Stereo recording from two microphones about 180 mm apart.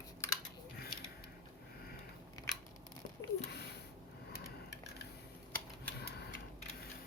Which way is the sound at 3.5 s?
65° left (ahead or behind).